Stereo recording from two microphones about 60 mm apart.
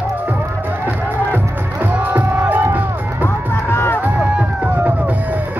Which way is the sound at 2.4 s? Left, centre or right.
Right.